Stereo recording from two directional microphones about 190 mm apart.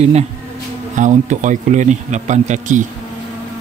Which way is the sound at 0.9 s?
40° right (ahead or behind).